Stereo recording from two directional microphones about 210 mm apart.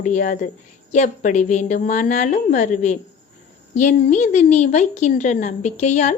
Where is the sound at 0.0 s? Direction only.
35° left (ahead or behind).